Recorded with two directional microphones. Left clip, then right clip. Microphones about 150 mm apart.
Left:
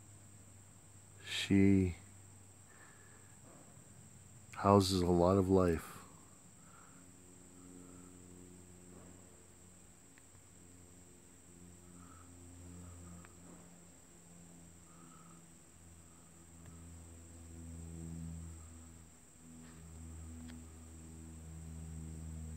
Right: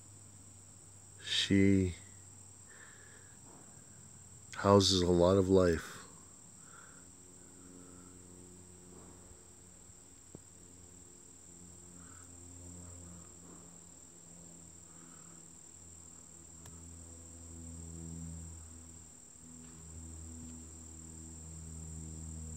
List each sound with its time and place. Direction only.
1.2 s cricket: centre (ahead or behind)
4.5 s speech: centre (ahead or behind)